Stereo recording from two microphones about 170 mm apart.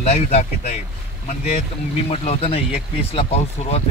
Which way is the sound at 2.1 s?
35° left (ahead or behind).